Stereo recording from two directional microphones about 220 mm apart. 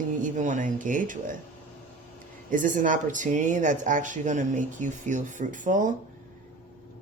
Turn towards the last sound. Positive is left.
turn(degrees=-35)  # may be behind; listen again after turning